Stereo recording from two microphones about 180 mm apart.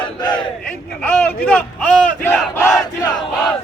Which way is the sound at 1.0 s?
5° left (ahead or behind).